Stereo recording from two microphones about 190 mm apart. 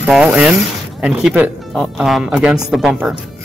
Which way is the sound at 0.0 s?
Centre (ahead or behind).